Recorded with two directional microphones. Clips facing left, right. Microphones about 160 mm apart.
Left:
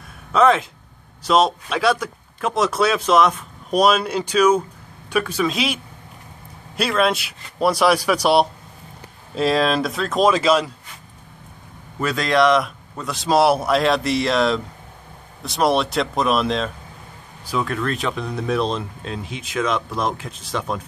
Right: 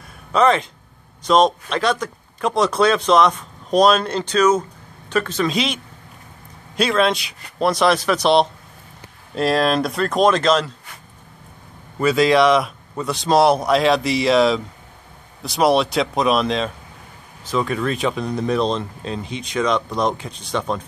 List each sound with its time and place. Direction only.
0.3 s speech: centre (ahead or behind)
6.8 s speech: 5° left (ahead or behind)
12.0 s speech: centre (ahead or behind)